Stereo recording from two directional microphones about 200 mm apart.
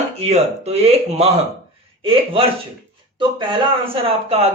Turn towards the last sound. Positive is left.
turn(degrees=-30)  # may be behind; listen again after turning